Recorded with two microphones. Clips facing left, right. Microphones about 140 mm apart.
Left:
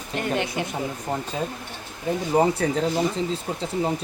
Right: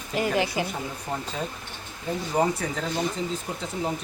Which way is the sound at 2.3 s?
25° left (ahead or behind).